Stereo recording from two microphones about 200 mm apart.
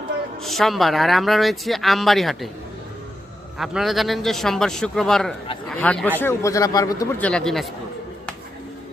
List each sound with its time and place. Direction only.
0.4 s speech: centre (ahead or behind)
3.6 s speech: centre (ahead or behind); by 7.3 s 15° left (ahead or behind)
7.3 s speech: 5° left (ahead or behind)